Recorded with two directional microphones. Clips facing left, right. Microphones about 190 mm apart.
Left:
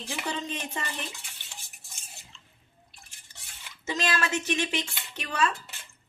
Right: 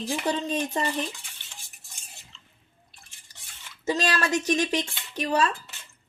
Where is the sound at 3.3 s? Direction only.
40° right (ahead or behind).